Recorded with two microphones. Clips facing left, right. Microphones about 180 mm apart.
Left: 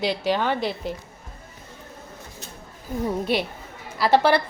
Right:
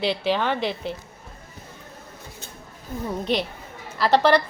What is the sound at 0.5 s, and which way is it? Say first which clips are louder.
Speech: even; 40° left (ahead or behind).